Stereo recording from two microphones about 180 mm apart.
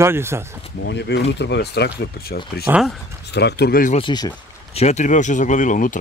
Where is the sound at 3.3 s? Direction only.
70° left (ahead or behind).